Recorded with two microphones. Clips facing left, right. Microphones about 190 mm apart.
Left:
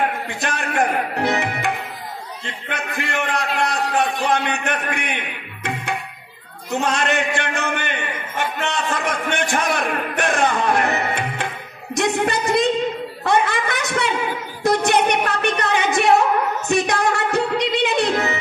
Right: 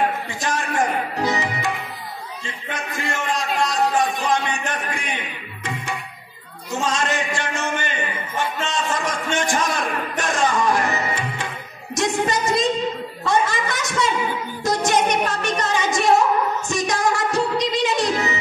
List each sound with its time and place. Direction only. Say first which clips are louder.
0.3 s a man's voice: even; 60° left (ahead or behind)
13.2 s a sound: left 2 dB; 60° left (ahead or behind)
14.6 s music: left 3 dB; 60° left (ahead or behind)